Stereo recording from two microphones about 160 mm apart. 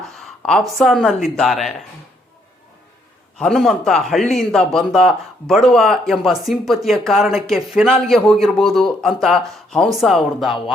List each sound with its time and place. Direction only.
0.0 s a sound: 5° left (ahead or behind)
0.8 s speech: centre (ahead or behind)
3.3 s speech: centre (ahead or behind)